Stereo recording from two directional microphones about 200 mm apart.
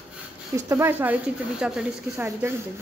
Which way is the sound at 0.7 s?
15° right (ahead or behind).